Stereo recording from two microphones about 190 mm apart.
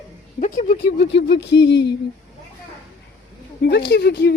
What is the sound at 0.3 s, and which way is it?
Speech, 40° left (ahead or behind).